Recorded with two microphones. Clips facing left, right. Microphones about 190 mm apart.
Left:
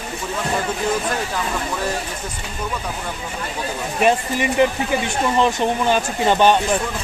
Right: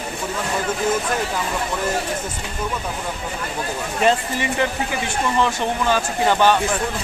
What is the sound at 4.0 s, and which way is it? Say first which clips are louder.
Speech: left 2 dB; 15° left (ahead or behind).